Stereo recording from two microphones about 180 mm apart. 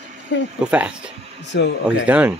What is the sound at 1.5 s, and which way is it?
Speech, 75° left (ahead or behind).